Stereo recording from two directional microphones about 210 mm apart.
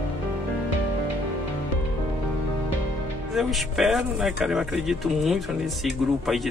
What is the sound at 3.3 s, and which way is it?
Speech, centre (ahead or behind).